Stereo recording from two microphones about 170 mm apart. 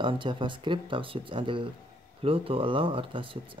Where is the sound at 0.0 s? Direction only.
30° right (ahead or behind).